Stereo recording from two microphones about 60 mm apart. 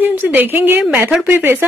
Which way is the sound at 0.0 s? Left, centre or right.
Right.